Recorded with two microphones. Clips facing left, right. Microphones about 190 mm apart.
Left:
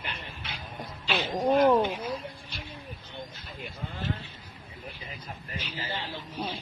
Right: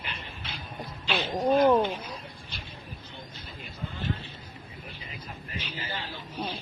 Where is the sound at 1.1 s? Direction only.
10° left (ahead or behind).